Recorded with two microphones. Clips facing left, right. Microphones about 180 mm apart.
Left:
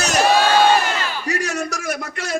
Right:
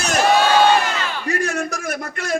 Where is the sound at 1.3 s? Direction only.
55° right (ahead or behind).